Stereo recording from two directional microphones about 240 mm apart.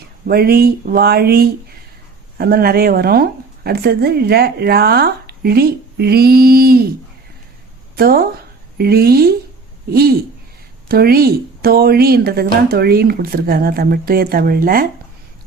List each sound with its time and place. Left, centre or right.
0.3 s a woman's voice: right
7.9 s a woman's voice: right